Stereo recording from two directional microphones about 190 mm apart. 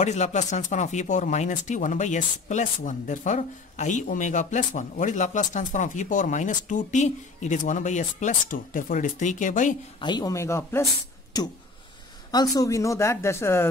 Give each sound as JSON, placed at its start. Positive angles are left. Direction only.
{"t": 0.0, "sound": "speech", "side_deg": 35}
{"t": 9.9, "sound": "speech", "side_deg": 25}
{"t": 12.3, "sound": "speech", "side_deg": 20}